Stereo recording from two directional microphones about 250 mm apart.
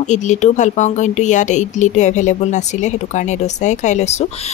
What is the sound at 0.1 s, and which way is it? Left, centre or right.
Speech, left.